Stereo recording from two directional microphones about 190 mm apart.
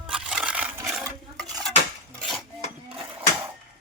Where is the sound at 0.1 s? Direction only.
5° right (ahead or behind).